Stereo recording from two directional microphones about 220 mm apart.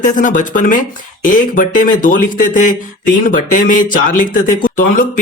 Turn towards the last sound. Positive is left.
turn(degrees=40)  # may be behind; listen again after turning